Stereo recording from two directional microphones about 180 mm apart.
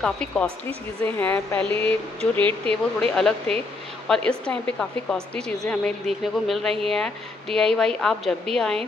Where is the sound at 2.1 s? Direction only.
25° right (ahead or behind).